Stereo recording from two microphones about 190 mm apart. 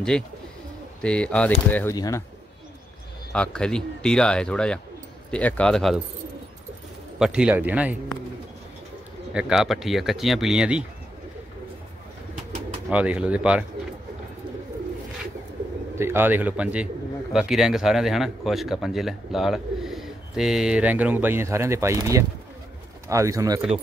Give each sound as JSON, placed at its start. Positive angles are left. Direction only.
{"t": 0.1, "sound": "a man's voice", "side_deg": 5}
{"t": 3.3, "sound": "a man's voice", "side_deg": 5}
{"t": 7.2, "sound": "speech", "side_deg": -5}
{"t": 9.3, "sound": "a man's voice", "side_deg": -5}
{"t": 12.9, "sound": "speech", "side_deg": -5}
{"t": 16.0, "sound": "a man's voice", "side_deg": -10}